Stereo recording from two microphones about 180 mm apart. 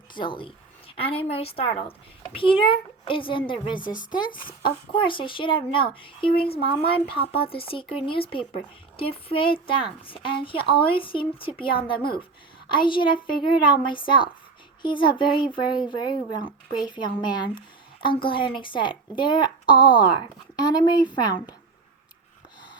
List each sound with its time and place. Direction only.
0.1 s a woman's voice: 25° left (ahead or behind)
3.8 s speech: 50° left (ahead or behind)
4.1 s a woman's voice: 25° left (ahead or behind)
12.6 s a woman's voice: 25° left (ahead or behind)